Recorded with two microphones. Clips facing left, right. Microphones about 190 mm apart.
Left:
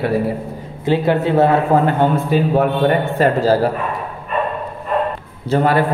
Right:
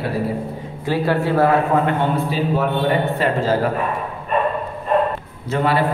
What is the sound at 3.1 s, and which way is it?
Speech, 40° left (ahead or behind).